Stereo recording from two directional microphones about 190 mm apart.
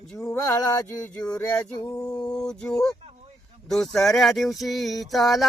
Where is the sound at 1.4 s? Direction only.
5° left (ahead or behind).